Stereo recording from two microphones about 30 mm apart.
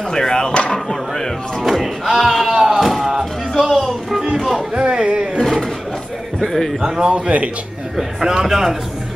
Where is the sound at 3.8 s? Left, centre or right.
Centre.